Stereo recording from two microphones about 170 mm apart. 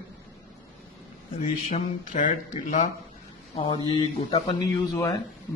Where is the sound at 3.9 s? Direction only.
35° left (ahead or behind).